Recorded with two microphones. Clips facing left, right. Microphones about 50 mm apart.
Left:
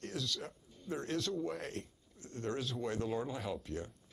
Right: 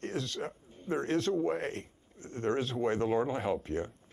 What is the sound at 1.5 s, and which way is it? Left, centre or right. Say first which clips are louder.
Speech: right 7 dB; right.